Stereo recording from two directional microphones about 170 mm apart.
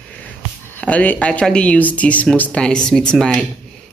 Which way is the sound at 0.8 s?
10° left (ahead or behind).